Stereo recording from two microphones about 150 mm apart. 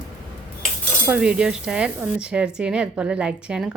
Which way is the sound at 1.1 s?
5° right (ahead or behind).